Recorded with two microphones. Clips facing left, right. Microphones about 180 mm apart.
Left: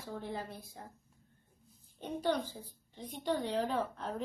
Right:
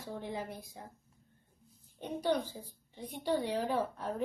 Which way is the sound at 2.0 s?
15° right (ahead or behind).